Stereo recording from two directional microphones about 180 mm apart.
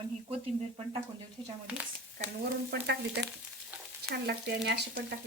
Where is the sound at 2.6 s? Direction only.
65° right (ahead or behind).